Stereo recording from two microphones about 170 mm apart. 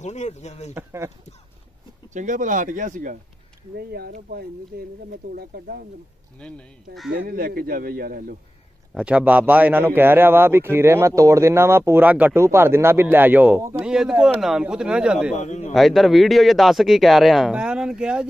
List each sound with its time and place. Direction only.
0.0 s speech: 40° left (ahead or behind)
0.7 s speech: 15° right (ahead or behind)
2.1 s speech: 50° right (ahead or behind)
3.7 s a man's voice: 65° right (ahead or behind)
6.4 s speech: 5° left (ahead or behind)
7.1 s a man's voice: 65° right (ahead or behind)
8.9 s speech: 5° right (ahead or behind)
15.3 s a man's voice: 45° left (ahead or behind)
15.7 s speech: centre (ahead or behind)